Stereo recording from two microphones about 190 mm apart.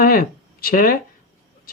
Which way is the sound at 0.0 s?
50° left (ahead or behind).